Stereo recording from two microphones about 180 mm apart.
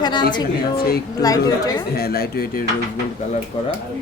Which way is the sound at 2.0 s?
60° left (ahead or behind).